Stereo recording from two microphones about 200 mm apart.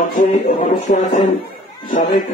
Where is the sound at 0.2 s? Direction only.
40° left (ahead or behind).